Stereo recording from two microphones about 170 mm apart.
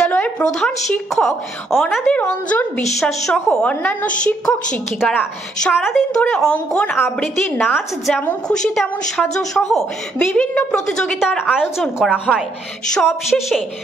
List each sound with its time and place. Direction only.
0.0 s a woman's voice: 5° left (ahead or behind)